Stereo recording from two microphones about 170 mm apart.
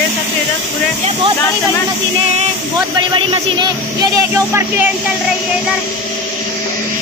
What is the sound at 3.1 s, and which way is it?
Speech, 25° right (ahead or behind).